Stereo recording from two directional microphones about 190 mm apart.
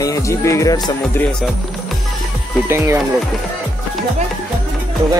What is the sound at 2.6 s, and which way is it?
Speech, 15° right (ahead or behind).